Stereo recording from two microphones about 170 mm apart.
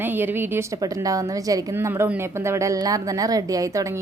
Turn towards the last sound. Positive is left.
turn(degrees=-20)  # may be behind; listen again after turning